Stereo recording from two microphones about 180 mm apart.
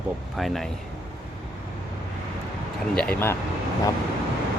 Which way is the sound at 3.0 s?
10° left (ahead or behind).